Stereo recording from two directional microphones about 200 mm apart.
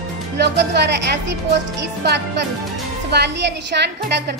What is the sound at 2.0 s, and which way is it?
Speech, 60° right (ahead or behind).